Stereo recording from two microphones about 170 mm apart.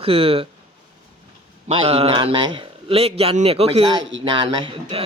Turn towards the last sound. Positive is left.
turn(degrees=-30)  # may be behind; listen again after turning